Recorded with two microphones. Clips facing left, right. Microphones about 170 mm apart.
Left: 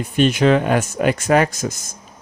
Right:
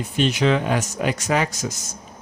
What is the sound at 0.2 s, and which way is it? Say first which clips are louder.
Speech: left 5 dB; 50° left (ahead or behind).